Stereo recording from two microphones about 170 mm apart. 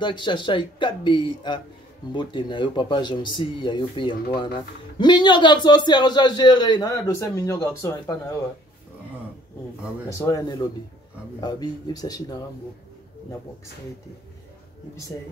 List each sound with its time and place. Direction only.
0.0 s a man's voice: 25° left (ahead or behind)
10.1 s a man's voice: 20° left (ahead or behind)